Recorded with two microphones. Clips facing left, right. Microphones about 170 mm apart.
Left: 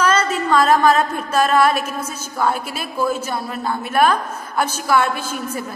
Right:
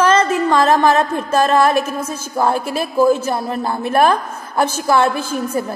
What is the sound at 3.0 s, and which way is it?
A woman's voice, 30° right (ahead or behind).